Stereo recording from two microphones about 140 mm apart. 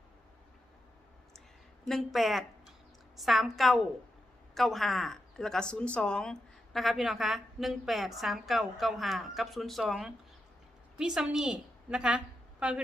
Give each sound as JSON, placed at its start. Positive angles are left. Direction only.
{"t": 1.9, "sound": "a woman's voice", "side_deg": 0}